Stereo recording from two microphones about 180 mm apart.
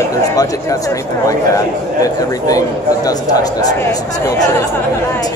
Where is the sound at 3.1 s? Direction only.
20° left (ahead or behind).